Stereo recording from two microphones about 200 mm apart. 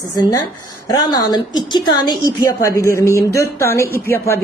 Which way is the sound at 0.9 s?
20° left (ahead or behind).